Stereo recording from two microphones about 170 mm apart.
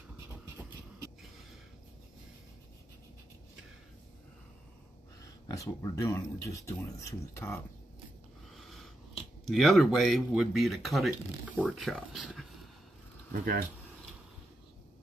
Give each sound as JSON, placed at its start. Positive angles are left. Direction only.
{"t": 5.2, "sound": "speech", "side_deg": 20}
{"t": 8.5, "sound": "a sound", "side_deg": 0}
{"t": 9.5, "sound": "speech", "side_deg": 0}
{"t": 13.3, "sound": "speech", "side_deg": -60}